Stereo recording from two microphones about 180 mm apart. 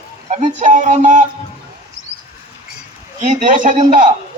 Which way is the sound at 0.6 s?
45° right (ahead or behind).